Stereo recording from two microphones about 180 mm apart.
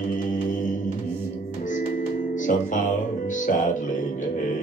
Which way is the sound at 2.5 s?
45° left (ahead or behind).